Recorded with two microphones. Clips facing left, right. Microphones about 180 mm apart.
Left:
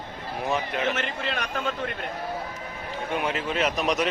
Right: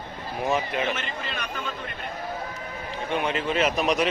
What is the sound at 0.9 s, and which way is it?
Speech, 75° left (ahead or behind).